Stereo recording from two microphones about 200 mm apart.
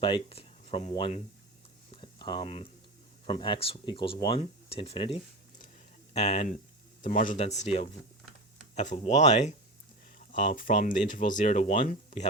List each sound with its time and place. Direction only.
0.0 s speech: 25° left (ahead or behind)
1.9 s a sound: 25° left (ahead or behind)
3.2 s speech: 25° left (ahead or behind)